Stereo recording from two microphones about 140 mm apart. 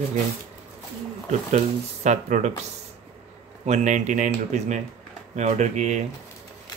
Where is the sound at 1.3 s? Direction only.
55° right (ahead or behind).